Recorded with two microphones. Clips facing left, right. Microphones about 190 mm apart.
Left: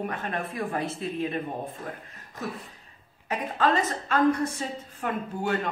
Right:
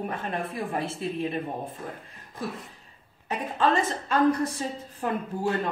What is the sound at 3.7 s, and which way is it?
A woman's voice, 30° right (ahead or behind).